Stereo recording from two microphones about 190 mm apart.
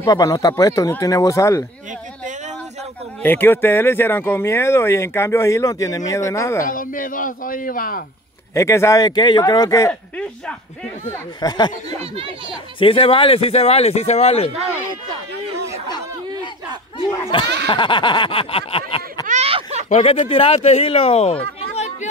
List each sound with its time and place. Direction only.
0.0 s speech: 20° left (ahead or behind)
3.2 s speech: 10° left (ahead or behind)
6.6 s speech: 45° left (ahead or behind)
8.5 s speech: 15° left (ahead or behind)
11.1 s a sound: 20° left (ahead or behind)
12.4 s speech: 25° left (ahead or behind)
17.3 s a sound: 25° left (ahead or behind)
19.2 s a sound: 35° right (ahead or behind)
19.9 s speech: 35° left (ahead or behind)
21.5 s chatter: 35° left (ahead or behind)